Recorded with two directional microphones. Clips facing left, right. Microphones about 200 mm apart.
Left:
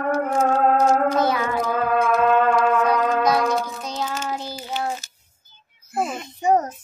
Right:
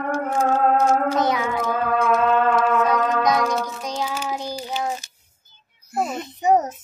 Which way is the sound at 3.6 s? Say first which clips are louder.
Right 1 dB; 10° right (ahead or behind).